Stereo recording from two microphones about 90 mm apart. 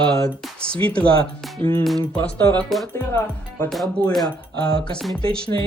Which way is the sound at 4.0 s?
50° right (ahead or behind).